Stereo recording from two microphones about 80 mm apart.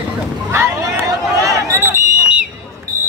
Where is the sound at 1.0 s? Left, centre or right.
Right.